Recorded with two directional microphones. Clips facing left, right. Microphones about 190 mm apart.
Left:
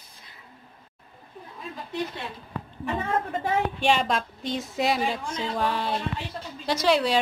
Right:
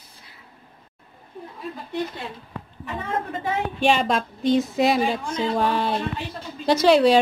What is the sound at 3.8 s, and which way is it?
Speech, 20° right (ahead or behind).